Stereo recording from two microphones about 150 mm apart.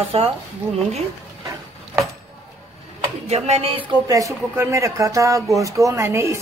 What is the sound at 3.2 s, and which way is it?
A woman's voice, 45° right (ahead or behind).